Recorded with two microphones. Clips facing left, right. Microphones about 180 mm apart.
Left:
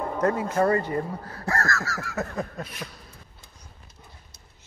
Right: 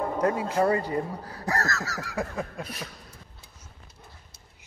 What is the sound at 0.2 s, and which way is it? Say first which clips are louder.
Speech: left 2 dB; 15° right (ahead or behind).